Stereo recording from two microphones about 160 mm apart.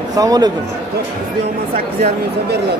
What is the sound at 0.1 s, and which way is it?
Speech, 25° right (ahead or behind).